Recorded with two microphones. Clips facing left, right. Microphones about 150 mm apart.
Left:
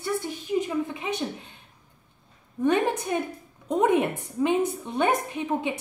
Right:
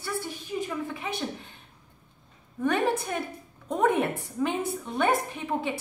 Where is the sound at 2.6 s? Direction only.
15° left (ahead or behind).